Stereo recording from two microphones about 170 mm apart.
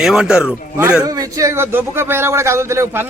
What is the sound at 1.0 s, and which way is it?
Speech, 20° right (ahead or behind).